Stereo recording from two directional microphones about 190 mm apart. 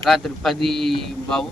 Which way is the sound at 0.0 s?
Centre (ahead or behind).